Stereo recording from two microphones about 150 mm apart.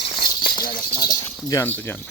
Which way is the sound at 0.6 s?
65° left (ahead or behind).